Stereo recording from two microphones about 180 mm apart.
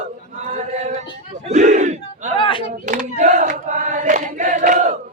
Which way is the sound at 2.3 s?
25° left (ahead or behind).